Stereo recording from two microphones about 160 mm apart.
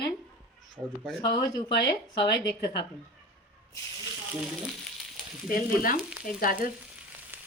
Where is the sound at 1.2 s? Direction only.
25° left (ahead or behind).